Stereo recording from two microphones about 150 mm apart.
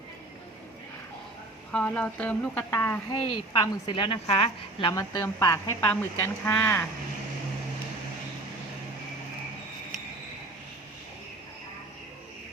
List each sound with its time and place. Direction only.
1.7 s speech: 10° left (ahead or behind)
3.1 s a woman's voice: 30° left (ahead or behind)
4.9 s speech: 25° left (ahead or behind)